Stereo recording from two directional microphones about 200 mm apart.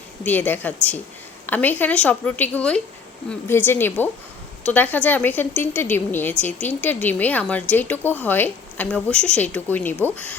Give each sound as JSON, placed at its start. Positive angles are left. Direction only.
{"t": 0.2, "sound": "speech", "side_deg": 10}